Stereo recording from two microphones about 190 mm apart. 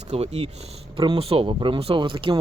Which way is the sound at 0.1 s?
35° right (ahead or behind).